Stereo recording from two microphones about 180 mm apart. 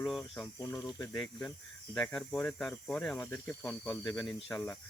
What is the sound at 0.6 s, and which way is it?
Speech, 20° left (ahead or behind).